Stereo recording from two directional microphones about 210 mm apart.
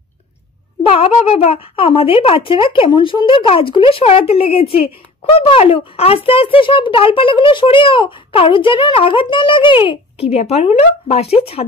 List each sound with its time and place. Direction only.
0.8 s a child's voice: 30° left (ahead or behind)